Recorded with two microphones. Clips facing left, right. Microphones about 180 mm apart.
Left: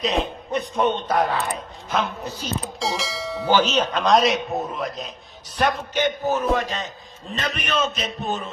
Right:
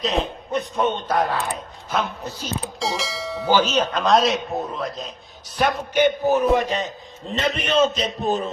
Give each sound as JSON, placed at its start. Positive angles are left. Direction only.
{"t": 0.0, "sound": "a man's voice", "side_deg": 0}
{"t": 2.6, "sound": "mechanisms", "side_deg": 0}
{"t": 3.9, "sound": "a man's voice", "side_deg": 0}